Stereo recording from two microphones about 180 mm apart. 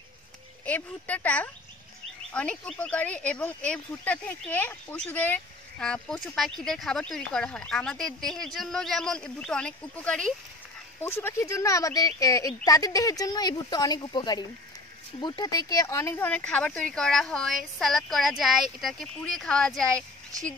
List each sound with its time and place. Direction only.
0.7 s speech: 10° left (ahead or behind)